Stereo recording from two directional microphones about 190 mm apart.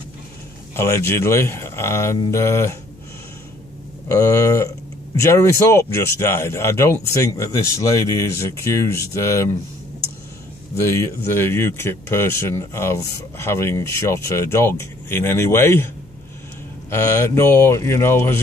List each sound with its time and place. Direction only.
0.7 s speech: 15° left (ahead or behind)
4.1 s speech: 15° left (ahead or behind)
10.8 s speech: 15° left (ahead or behind)
16.9 s speech: 15° left (ahead or behind)